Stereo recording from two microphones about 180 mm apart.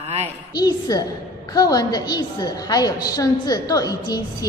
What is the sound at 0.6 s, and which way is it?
A woman's voice, 20° left (ahead or behind).